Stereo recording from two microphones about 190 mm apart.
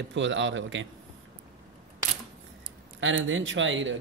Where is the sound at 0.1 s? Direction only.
75° right (ahead or behind).